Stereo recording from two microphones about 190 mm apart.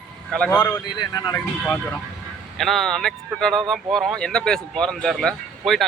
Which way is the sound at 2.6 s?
Centre (ahead or behind).